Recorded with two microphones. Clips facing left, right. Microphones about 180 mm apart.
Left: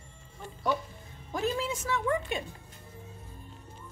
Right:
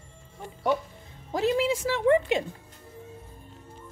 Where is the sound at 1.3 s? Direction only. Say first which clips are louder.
Right 6 dB; 90° right.